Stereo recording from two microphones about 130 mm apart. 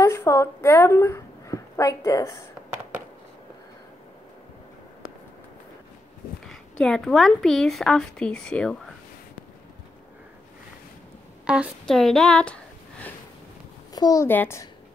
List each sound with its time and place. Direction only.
0.0 s a woman's voice: 20° left (ahead or behind)
6.4 s a woman's voice: 5° left (ahead or behind)
11.4 s a woman's voice: 5° right (ahead or behind)
13.9 s a child's voice: 30° left (ahead or behind)
14.2 s a child's voice: 15° left (ahead or behind)